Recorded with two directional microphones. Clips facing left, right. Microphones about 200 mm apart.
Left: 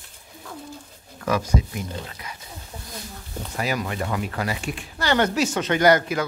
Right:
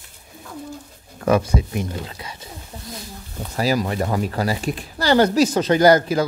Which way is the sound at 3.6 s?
35° right (ahead or behind).